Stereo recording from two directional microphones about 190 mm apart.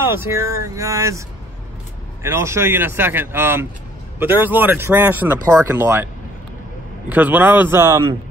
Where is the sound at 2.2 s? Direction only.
15° right (ahead or behind).